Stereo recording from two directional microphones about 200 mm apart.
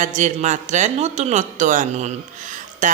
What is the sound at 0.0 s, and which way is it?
Speech, 40° right (ahead or behind).